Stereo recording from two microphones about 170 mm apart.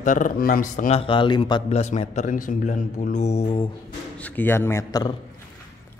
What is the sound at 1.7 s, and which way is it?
A man's voice, 40° left (ahead or behind).